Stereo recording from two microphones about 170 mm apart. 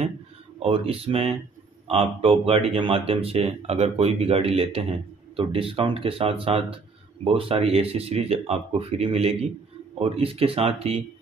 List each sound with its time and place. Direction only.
0.6 s speech: 35° right (ahead or behind)